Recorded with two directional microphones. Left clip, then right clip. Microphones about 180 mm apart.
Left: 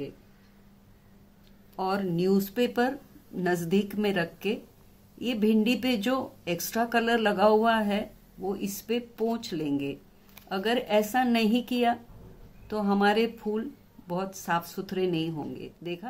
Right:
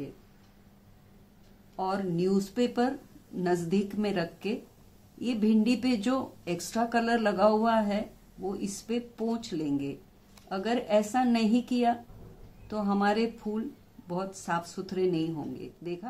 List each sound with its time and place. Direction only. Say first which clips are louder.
1.8 s speech: left 2 dB; 10° left (ahead or behind)